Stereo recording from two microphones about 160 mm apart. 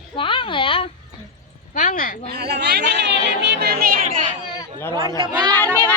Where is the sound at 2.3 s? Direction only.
85° right; by 4.0 s 65° right (ahead or behind).